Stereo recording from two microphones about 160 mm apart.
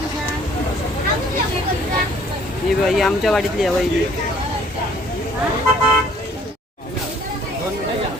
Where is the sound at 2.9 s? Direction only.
Centre (ahead or behind).